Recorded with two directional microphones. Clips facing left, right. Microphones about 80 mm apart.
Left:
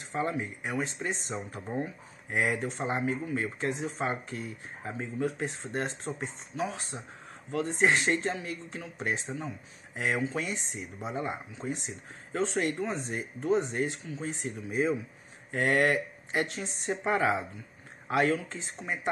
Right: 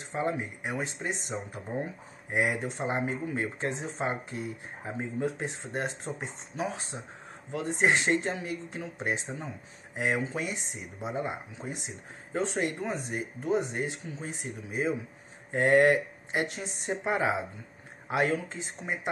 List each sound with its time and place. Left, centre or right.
0.1 s speech: right
2.3 s speech: centre